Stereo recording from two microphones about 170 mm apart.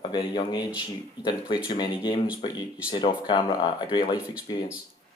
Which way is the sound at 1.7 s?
25° left (ahead or behind).